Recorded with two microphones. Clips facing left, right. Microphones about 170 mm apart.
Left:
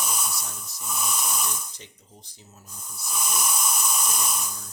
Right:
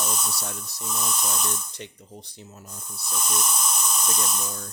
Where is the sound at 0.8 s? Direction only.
5° left (ahead or behind).